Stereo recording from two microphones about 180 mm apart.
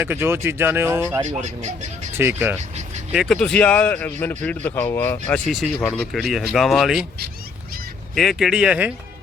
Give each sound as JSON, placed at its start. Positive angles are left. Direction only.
{"t": 0.0, "sound": "speech", "side_deg": -10}
{"t": 1.2, "sound": "speech", "side_deg": -40}
{"t": 2.1, "sound": "speech", "side_deg": -10}
{"t": 3.1, "sound": "speech", "side_deg": 0}
{"t": 8.1, "sound": "speech", "side_deg": 0}